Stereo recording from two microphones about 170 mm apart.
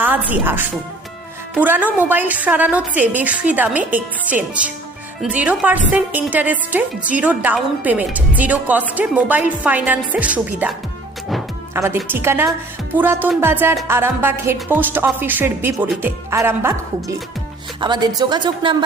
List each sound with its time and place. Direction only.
0.0 s a woman's voice: 10° right (ahead or behind)
11.7 s a woman's voice: 15° right (ahead or behind)
17.7 s a woman's voice: 25° right (ahead or behind)